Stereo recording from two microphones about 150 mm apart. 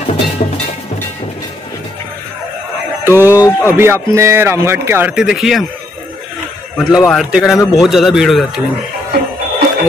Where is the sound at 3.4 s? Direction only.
15° left (ahead or behind).